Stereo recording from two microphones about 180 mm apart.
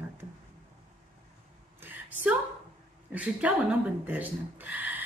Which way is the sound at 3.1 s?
10° right (ahead or behind).